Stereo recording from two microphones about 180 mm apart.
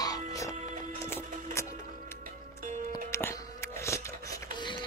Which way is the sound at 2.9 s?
15° left (ahead or behind).